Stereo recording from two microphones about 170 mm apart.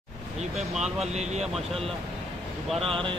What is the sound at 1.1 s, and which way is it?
Speech, 40° right (ahead or behind).